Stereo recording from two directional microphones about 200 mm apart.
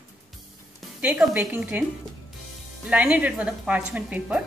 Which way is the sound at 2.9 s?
5° right (ahead or behind).